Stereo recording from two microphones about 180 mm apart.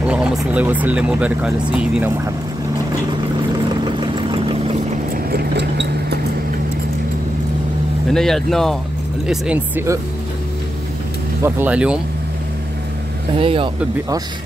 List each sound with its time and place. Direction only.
0.0 s speech: 10° right (ahead or behind)
3.6 s vehicle: 25° right (ahead or behind)
5.1 s vehicle: 60° right (ahead or behind)
8.1 s speech: centre (ahead or behind)
11.4 s speech: 10° right (ahead or behind)
13.4 s speech: 30° right (ahead or behind)